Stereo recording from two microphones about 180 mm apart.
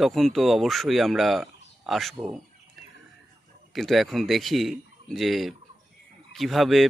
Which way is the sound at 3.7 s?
Centre (ahead or behind).